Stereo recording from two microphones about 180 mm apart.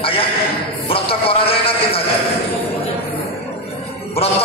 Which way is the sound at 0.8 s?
30° left (ahead or behind).